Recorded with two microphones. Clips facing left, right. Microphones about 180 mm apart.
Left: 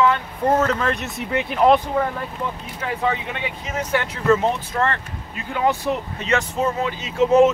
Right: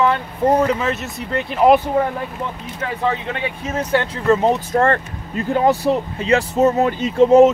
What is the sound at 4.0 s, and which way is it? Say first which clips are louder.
Speech: right 2 dB; 30° right (ahead or behind).